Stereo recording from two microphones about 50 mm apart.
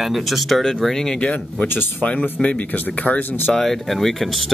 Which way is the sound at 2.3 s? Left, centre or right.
Left.